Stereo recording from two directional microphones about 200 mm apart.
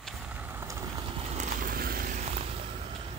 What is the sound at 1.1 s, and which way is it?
Vehicle, 35° right (ahead or behind).